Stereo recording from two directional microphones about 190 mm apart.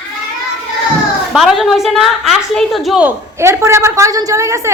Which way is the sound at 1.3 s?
Centre (ahead or behind).